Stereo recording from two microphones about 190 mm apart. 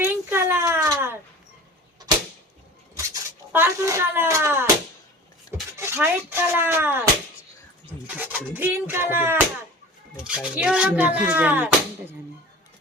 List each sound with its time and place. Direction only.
0.0 s a sound: 10° right (ahead or behind)
3.5 s speech: 15° right (ahead or behind)
5.7 s speech: 15° right (ahead or behind)
8.0 s speech: 10° right (ahead or behind)